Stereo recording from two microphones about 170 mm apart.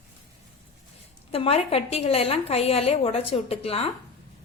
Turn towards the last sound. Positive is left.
turn(degrees=35)  # may be behind; listen again after turning